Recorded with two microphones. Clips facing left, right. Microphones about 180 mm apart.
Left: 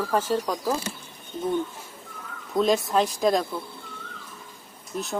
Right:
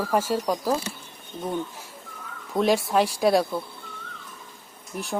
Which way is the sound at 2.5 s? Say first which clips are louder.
Even; 10° right (ahead or behind).